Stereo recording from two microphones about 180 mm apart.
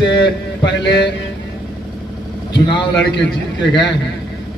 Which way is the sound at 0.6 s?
80° left.